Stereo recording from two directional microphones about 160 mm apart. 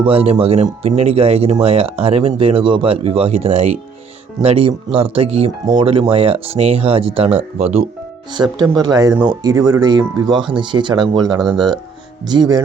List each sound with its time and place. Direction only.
0.0 s speech: 40° right (ahead or behind)
8.3 s speech: 25° right (ahead or behind)
11.4 s speech: centre (ahead or behind)
12.2 s speech: 25° right (ahead or behind)